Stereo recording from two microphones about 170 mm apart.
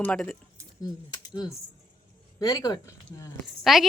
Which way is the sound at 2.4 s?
20° left (ahead or behind).